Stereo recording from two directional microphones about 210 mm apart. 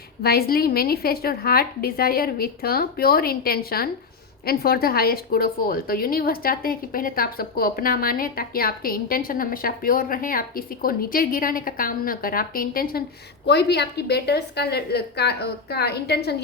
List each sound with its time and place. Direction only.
0.2 s a woman's voice: 45° left (ahead or behind)